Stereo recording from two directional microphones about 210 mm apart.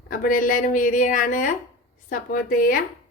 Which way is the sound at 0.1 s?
40° left (ahead or behind).